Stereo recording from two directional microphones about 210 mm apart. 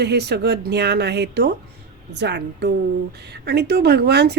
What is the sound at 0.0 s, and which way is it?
A woman's voice, 50° right (ahead or behind).